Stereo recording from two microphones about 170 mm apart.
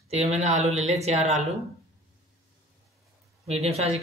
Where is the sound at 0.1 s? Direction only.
40° right (ahead or behind).